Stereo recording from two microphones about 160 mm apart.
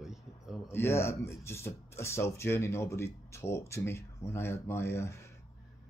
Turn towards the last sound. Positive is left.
turn(degrees=15)  # may be behind; listen again after turning